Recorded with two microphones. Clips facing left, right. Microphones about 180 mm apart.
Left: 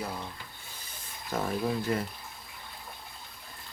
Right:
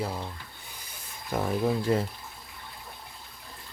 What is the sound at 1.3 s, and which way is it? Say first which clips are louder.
Speech: right 2 dB; 15° right (ahead or behind).